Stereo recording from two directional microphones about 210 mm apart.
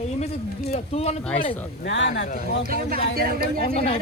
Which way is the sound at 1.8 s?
55° left (ahead or behind).